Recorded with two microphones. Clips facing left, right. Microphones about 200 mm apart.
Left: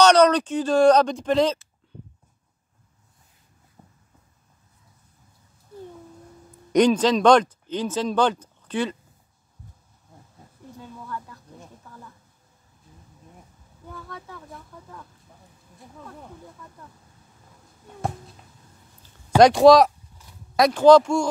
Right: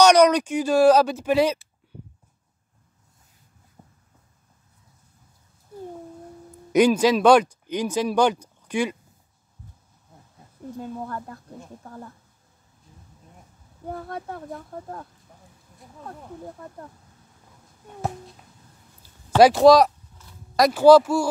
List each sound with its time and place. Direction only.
0.0 s speech: 10° right (ahead or behind)
3.8 s a sound: 10° right (ahead or behind)
6.7 s speech: 5° right (ahead or behind)
10.8 s speech: 50° right (ahead or behind)
14.0 s speech: 55° right (ahead or behind)
19.0 s a sound: 5° right (ahead or behind)
20.5 s speech: 5° right (ahead or behind)